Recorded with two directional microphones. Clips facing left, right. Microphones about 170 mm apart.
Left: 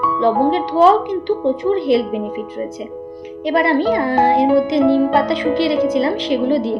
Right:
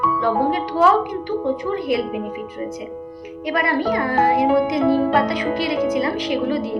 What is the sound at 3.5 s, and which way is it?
A child's voice, 30° left (ahead or behind).